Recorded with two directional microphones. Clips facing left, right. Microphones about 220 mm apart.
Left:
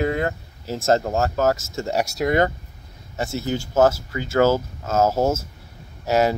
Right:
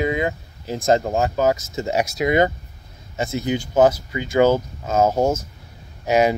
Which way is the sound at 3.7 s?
15° right (ahead or behind).